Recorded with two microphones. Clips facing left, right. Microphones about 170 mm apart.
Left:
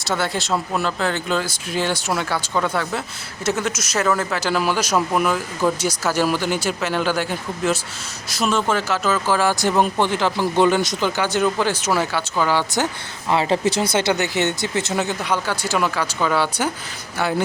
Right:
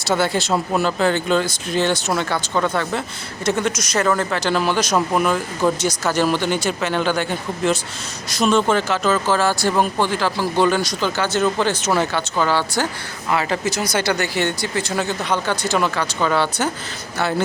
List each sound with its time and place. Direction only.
0.0 s speech: centre (ahead or behind); by 12.9 s 15° left (ahead or behind)
13.3 s speech: 25° left (ahead or behind); by 17.4 s 10° left (ahead or behind)